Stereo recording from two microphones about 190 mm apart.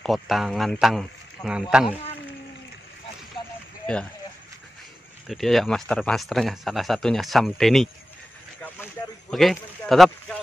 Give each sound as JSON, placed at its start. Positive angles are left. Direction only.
{"t": 0.0, "sound": "speech", "side_deg": 0}
{"t": 3.8, "sound": "speech", "side_deg": 5}
{"t": 5.2, "sound": "speech", "side_deg": 0}
{"t": 9.3, "sound": "speech", "side_deg": 0}